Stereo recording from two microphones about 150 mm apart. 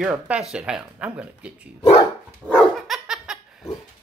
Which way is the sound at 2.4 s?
5° left (ahead or behind).